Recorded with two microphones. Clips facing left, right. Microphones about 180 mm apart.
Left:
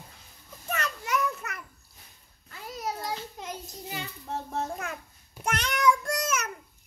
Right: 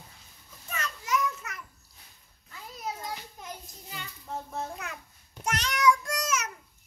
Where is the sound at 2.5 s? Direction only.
80° left.